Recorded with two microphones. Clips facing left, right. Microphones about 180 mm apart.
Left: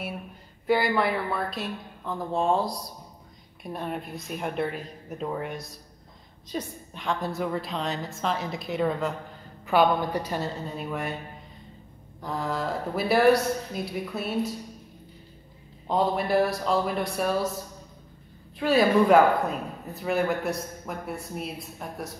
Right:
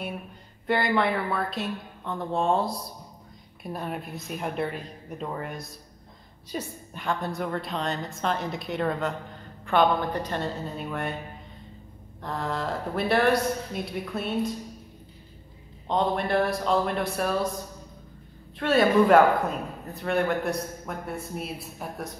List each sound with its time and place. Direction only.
0.7 s speech: centre (ahead or behind)
12.2 s speech: centre (ahead or behind)
15.9 s speech: 5° left (ahead or behind)
18.6 s speech: centre (ahead or behind)